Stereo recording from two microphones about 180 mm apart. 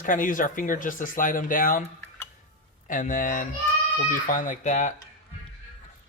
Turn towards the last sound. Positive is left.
turn(degrees=45)  # may be behind; listen again after turning